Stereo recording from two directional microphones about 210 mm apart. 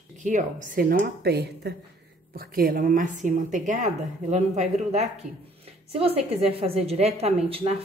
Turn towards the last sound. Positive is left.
turn(degrees=-30)  # may be behind; listen again after turning